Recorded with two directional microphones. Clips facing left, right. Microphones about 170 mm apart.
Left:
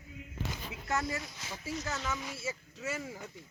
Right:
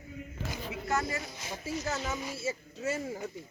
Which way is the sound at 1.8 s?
30° right (ahead or behind).